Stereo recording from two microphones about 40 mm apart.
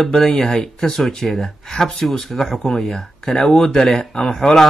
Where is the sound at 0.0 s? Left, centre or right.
Centre.